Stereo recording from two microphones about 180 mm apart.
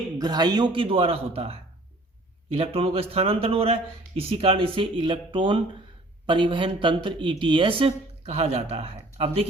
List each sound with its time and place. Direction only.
0.2 s speech: 20° right (ahead or behind)